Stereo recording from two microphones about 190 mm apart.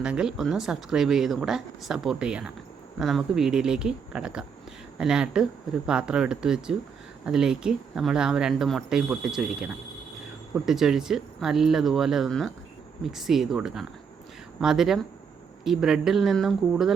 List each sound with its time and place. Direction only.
0.0 s speech: 5° right (ahead or behind)